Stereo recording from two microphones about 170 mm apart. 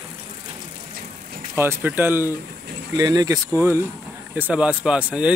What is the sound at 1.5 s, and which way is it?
Speech, 10° right (ahead or behind).